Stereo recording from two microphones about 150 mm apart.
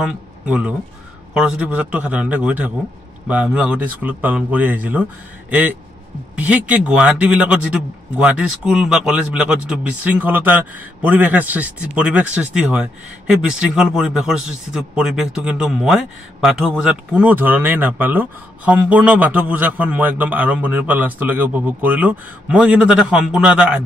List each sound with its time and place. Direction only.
0.0 s a man's voice: 10° right (ahead or behind)